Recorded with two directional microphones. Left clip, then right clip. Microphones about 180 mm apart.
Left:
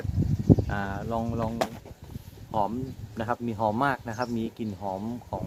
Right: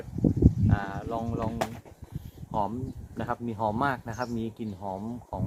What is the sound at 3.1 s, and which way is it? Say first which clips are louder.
Speech: left 3 dB; centre (ahead or behind).